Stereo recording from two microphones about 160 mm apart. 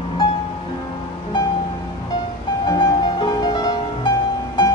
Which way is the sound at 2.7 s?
25° left (ahead or behind).